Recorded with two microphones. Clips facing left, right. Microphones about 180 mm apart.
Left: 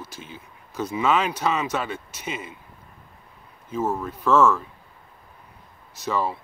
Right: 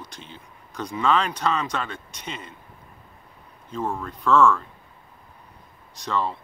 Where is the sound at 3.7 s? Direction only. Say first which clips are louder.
Left 3 dB; 5° left (ahead or behind).